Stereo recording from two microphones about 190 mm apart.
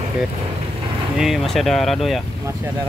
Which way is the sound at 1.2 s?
Centre (ahead or behind).